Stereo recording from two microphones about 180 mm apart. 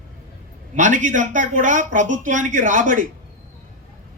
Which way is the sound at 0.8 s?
45° right (ahead or behind).